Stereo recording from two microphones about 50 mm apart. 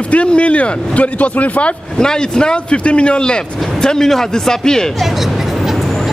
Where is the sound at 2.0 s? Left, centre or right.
Centre.